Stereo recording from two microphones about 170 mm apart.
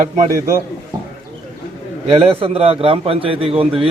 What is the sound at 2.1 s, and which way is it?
A man's voice, 35° right (ahead or behind).